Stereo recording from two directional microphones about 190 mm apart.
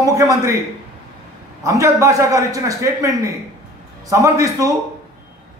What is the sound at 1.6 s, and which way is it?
Speech, 15° right (ahead or behind).